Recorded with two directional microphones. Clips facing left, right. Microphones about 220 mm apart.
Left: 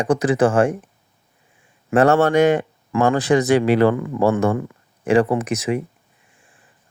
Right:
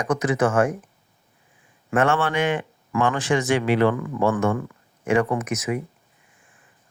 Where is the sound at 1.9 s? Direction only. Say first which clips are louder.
Left 7 dB; 40° left (ahead or behind).